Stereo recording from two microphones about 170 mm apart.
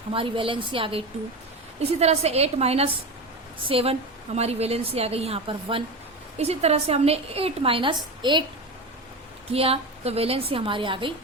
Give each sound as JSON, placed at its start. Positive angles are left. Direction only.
{"t": 0.1, "sound": "a woman's voice", "side_deg": -30}
{"t": 9.5, "sound": "a woman's voice", "side_deg": -35}